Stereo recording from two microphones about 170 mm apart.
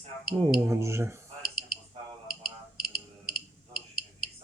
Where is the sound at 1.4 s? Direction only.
25° left (ahead or behind).